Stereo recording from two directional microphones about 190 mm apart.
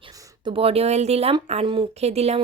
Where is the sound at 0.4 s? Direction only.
30° right (ahead or behind).